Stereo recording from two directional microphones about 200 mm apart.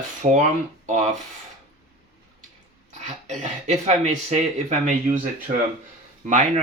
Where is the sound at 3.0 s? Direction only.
35° right (ahead or behind).